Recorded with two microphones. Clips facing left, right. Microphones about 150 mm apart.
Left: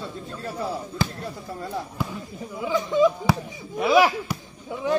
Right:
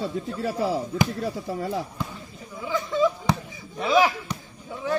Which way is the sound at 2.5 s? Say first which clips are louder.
Left 3 dB; 15° left (ahead or behind).